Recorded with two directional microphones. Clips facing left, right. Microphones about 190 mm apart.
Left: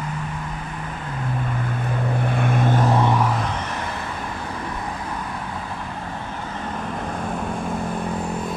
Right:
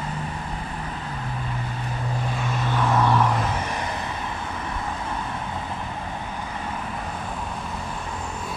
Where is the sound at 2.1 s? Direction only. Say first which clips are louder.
Left 6 dB; 60° left (ahead or behind).